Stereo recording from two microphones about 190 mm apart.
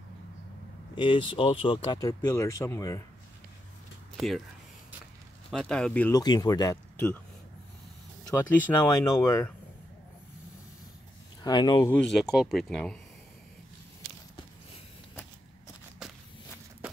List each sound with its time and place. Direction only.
0.9 s speech: 25° left (ahead or behind)
1.8 s speech: 20° left (ahead or behind)
5.5 s speech: 5° left (ahead or behind)
6.1 s speech: 20° left (ahead or behind)
8.3 s speech: 10° left (ahead or behind)
11.4 s speech: 20° left (ahead or behind)
11.9 s speech: 5° left (ahead or behind)